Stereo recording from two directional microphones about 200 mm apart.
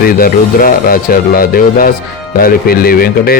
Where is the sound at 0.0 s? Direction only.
45° left (ahead or behind).